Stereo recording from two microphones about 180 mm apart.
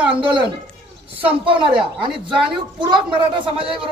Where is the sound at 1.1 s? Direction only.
30° right (ahead or behind).